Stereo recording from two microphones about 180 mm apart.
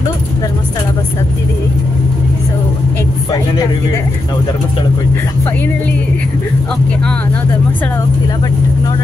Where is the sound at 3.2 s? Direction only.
20° left (ahead or behind).